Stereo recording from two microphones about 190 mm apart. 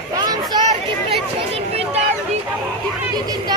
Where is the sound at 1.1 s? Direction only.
30° right (ahead or behind).